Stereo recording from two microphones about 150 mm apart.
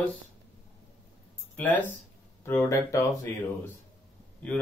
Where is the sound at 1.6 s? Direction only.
10° left (ahead or behind).